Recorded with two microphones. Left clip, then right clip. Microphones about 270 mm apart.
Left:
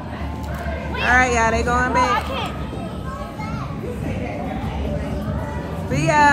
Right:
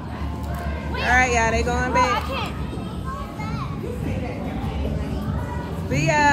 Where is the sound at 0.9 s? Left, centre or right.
Right.